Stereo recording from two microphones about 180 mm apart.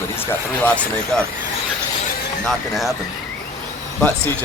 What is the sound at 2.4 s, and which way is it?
Speech, centre (ahead or behind).